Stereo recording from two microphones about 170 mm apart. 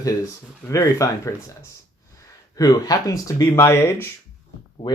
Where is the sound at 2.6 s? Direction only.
20° left (ahead or behind).